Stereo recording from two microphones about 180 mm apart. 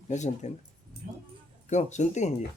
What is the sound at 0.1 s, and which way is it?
Speech, 40° left (ahead or behind).